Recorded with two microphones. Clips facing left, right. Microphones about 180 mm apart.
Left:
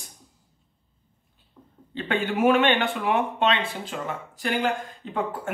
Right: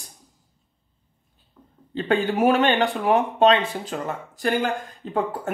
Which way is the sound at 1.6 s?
10° left (ahead or behind).